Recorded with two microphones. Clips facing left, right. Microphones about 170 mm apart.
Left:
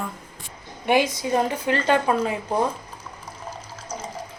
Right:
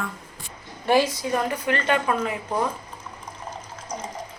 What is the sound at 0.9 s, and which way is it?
A woman's voice, 20° left (ahead or behind).